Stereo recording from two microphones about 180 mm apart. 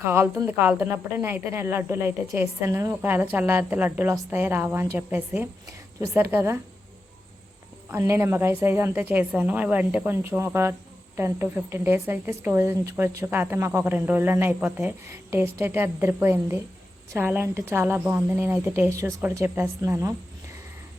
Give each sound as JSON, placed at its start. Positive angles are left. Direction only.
{"t": 0.0, "sound": "speech", "side_deg": -10}
{"t": 7.9, "sound": "speech", "side_deg": -15}